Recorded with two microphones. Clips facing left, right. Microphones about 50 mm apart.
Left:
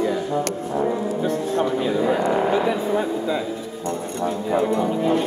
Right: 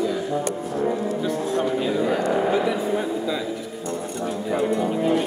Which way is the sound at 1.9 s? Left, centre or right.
Left.